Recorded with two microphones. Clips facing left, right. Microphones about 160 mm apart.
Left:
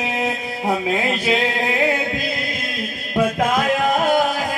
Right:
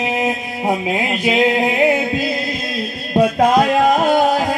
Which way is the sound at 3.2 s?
40° right (ahead or behind).